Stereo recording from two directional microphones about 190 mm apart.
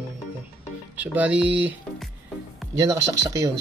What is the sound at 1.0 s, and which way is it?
Speech, 10° right (ahead or behind).